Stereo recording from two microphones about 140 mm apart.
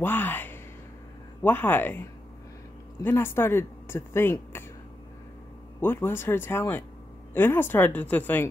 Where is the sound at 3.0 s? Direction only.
15° left (ahead or behind).